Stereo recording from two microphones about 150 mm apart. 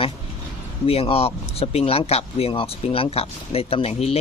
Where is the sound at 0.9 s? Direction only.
40° left (ahead or behind).